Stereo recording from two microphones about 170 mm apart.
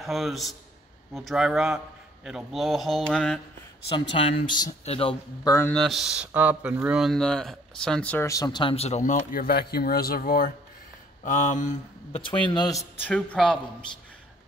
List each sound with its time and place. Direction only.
0.0 s speech: centre (ahead or behind)
4.1 s a man's voice: 30° left (ahead or behind)
5.4 s speech: 20° left (ahead or behind)
5.7 s speech: centre (ahead or behind); by 10.5 s 60° left (ahead or behind)
11.2 s speech: 45° left (ahead or behind)
12.2 s speech: 30° left (ahead or behind)
13.0 s speech: 5° left (ahead or behind)